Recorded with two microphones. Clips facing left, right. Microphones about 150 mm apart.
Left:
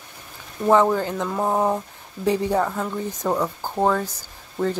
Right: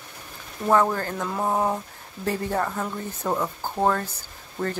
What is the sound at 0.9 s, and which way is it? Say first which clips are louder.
Speech: left 4 dB; 5° left (ahead or behind).